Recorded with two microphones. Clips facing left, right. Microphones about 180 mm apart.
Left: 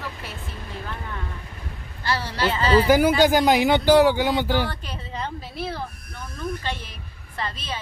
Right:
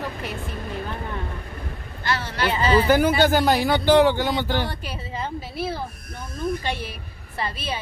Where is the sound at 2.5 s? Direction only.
15° right (ahead or behind).